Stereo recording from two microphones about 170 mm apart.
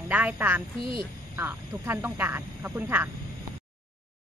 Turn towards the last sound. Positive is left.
turn(degrees=-15)  # may be behind; listen again after turning